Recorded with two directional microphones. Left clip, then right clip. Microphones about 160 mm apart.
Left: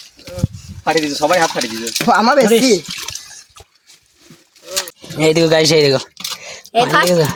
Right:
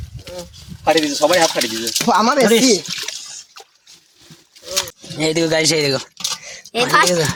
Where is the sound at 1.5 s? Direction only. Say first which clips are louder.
Even; 85° left.